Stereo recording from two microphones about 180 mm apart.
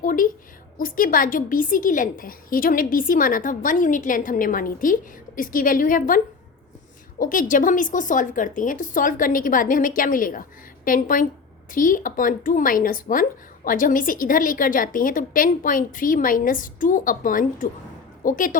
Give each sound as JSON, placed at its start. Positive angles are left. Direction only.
{"t": 0.0, "sound": "a woman's voice", "side_deg": 50}